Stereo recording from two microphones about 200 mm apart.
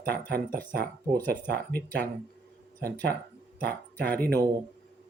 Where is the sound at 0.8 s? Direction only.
10° left (ahead or behind).